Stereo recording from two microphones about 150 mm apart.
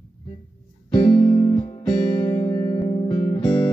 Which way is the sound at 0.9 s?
30° left (ahead or behind).